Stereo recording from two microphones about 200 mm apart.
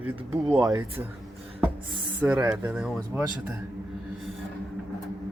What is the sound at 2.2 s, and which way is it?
Speech, 5° right (ahead or behind).